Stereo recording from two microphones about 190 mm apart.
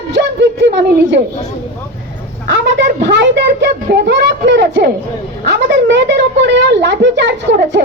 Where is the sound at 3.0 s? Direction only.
65° right (ahead or behind).